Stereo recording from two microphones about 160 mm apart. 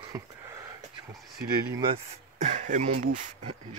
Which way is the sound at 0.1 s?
15° right (ahead or behind).